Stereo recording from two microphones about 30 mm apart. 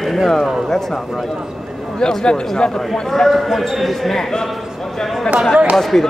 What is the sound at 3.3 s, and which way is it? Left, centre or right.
Speech, centre.